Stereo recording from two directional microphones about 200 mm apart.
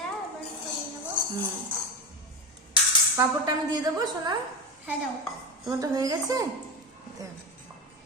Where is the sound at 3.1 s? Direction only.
20° right (ahead or behind).